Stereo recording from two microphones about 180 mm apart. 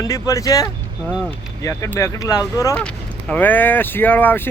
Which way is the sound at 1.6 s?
15° left (ahead or behind).